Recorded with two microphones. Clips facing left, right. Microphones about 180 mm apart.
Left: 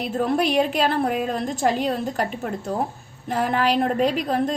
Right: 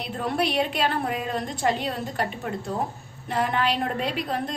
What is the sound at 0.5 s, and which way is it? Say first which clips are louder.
A woman's voice: left 4 dB; 45° left (ahead or behind).